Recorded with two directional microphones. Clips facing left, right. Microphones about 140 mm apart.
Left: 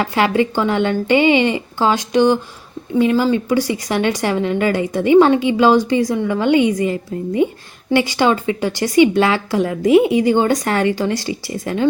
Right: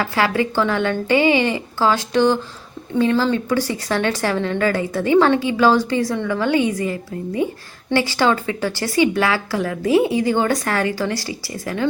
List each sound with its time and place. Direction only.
0.0 s a woman's voice: 20° left (ahead or behind)